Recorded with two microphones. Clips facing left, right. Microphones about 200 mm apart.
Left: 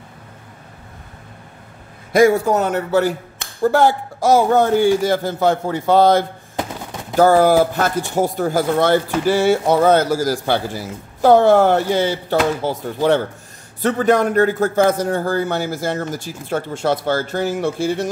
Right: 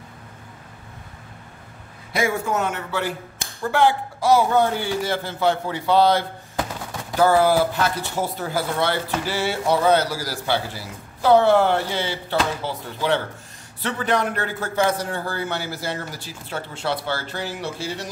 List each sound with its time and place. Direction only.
2.1 s a man's voice: 40° left (ahead or behind)
6.5 s a sound: 20° left (ahead or behind)
7.2 s speech: 45° left (ahead or behind)